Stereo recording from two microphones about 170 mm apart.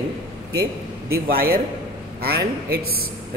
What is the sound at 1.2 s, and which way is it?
Speech, 60° right (ahead or behind).